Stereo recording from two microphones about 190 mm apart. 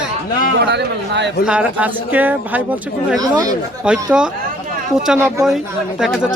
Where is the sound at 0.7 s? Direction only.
65° right (ahead or behind).